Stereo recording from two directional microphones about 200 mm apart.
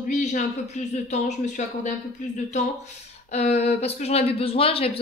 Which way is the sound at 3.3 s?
35° left (ahead or behind).